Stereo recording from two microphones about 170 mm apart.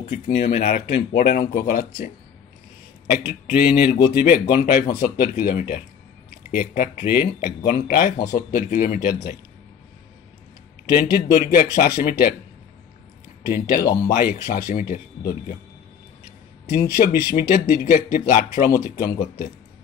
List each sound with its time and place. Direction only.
0.0 s speech: 40° left (ahead or behind)
3.3 s speech: 55° left (ahead or behind)
10.9 s speech: 60° left (ahead or behind)
13.5 s speech: 65° left (ahead or behind)
14.1 s speech: 50° left (ahead or behind)
14.6 s speech: 60° left (ahead or behind)
16.6 s speech: 65° left (ahead or behind)